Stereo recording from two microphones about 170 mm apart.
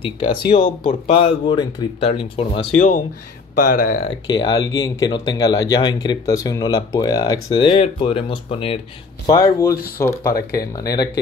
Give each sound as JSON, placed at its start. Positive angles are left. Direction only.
{"t": 0.0, "sound": "speech", "side_deg": 30}
{"t": 3.5, "sound": "speech", "side_deg": 55}
{"t": 4.3, "sound": "speech", "side_deg": 25}
{"t": 9.2, "sound": "speech", "side_deg": 15}
{"t": 10.3, "sound": "speech", "side_deg": 65}